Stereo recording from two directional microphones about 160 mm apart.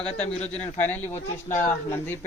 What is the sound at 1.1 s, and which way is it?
Speech, 40° left (ahead or behind).